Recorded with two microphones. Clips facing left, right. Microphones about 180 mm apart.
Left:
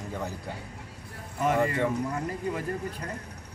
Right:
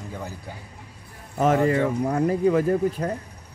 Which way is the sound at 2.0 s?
65° right (ahead or behind).